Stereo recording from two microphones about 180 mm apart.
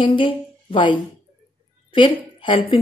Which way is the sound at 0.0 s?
30° left (ahead or behind).